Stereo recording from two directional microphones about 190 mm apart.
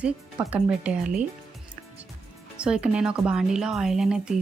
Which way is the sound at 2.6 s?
5° right (ahead or behind).